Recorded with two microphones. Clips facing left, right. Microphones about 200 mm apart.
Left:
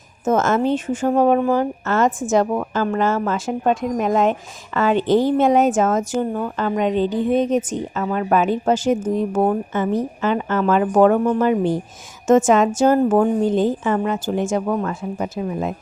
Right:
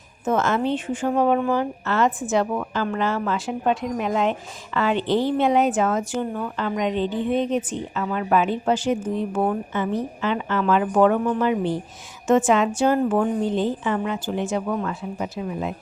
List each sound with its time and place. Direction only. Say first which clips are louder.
0.3 s speech: left 4 dB; 45° left (ahead or behind)